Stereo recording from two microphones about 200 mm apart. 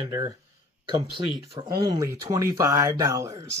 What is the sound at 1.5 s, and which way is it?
Speech, 20° right (ahead or behind).